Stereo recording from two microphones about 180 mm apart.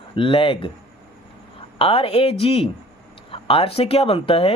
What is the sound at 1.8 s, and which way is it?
Speech, 30° left (ahead or behind).